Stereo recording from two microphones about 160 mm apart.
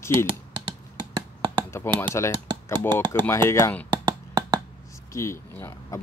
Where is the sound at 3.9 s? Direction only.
25° right (ahead or behind).